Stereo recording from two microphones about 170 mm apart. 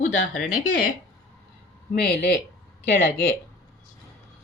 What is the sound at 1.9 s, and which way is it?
Speech, 60° left (ahead or behind).